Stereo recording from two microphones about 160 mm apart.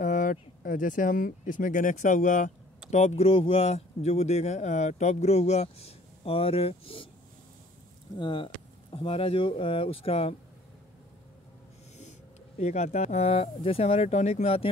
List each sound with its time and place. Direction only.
0.0 s speech: 55° left (ahead or behind); by 7.1 s 35° left (ahead or behind)
8.2 s speech: 30° left (ahead or behind)
12.0 s speech: 45° left (ahead or behind)